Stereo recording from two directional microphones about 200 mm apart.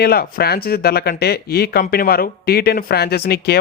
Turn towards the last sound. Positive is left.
turn(degrees=55)  # may be behind; listen again after turning